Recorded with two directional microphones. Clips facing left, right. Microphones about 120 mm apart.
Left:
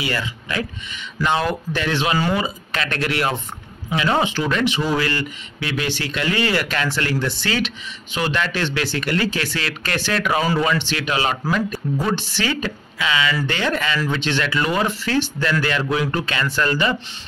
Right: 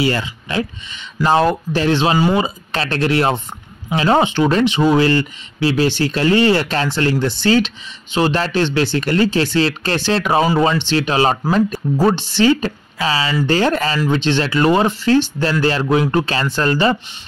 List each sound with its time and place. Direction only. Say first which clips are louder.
0.0 s speech: right 7 dB; 30° right (ahead or behind)